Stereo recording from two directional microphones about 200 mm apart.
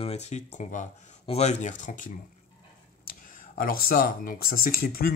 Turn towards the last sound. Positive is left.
turn(degrees=50)  # may be behind; listen again after turning